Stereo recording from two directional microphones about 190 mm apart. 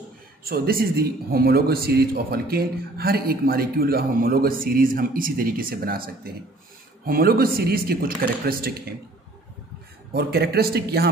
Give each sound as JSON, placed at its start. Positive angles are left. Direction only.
{"t": 0.4, "sound": "a man's voice", "side_deg": -50}
{"t": 10.1, "sound": "a man's voice", "side_deg": -55}